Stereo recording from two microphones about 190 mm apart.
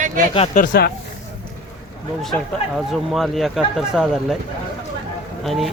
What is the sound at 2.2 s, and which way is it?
Speech, centre (ahead or behind).